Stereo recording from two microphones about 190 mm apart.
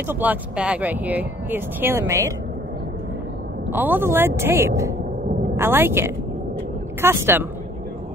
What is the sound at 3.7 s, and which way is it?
Speech, 10° right (ahead or behind).